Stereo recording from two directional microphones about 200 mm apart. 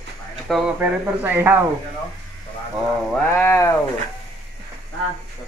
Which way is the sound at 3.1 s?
10° left (ahead or behind).